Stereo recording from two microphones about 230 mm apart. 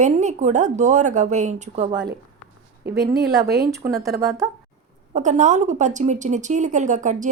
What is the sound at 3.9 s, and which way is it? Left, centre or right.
Speech, centre.